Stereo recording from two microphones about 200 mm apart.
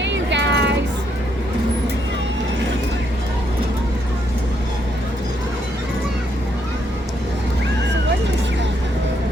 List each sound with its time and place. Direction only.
0.0 s music: 60° right (ahead or behind)